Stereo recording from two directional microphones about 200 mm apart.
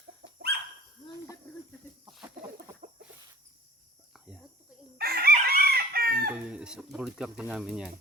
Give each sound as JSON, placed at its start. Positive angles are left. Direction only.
{"t": 0.2, "sound": "bird", "side_deg": -55}
{"t": 4.9, "sound": "chicken", "side_deg": -50}
{"t": 6.3, "sound": "chicken", "side_deg": -5}
{"t": 6.9, "sound": "speech", "side_deg": -5}